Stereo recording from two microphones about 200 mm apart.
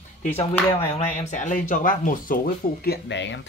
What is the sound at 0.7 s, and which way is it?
Speech, 30° left (ahead or behind).